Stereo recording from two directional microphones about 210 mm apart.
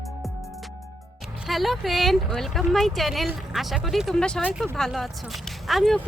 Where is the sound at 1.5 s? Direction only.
Centre (ahead or behind).